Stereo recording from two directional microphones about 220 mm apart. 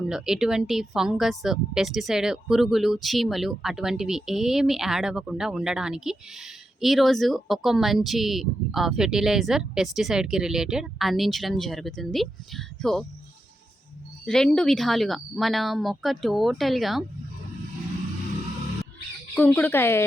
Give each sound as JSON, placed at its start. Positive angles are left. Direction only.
{"t": 0.1, "sound": "speech", "side_deg": 0}
{"t": 14.3, "sound": "speech", "side_deg": 5}
{"t": 19.3, "sound": "speech", "side_deg": 5}